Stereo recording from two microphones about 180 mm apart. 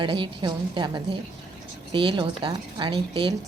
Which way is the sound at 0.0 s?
25° right (ahead or behind).